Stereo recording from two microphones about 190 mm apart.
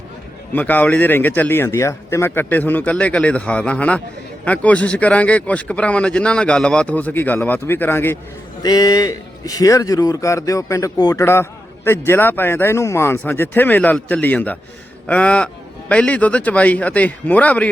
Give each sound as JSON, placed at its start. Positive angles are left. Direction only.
{"t": 0.5, "sound": "a man's voice", "side_deg": 10}